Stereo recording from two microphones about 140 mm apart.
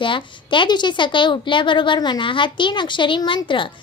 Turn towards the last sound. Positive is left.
turn(degrees=35)  # may be behind; listen again after turning